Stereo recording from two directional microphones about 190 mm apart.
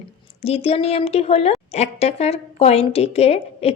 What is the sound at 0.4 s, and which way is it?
A woman's voice, 30° left (ahead or behind).